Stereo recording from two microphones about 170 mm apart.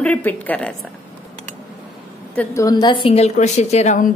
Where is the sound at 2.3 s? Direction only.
15° left (ahead or behind); by 4.1 s 45° left (ahead or behind).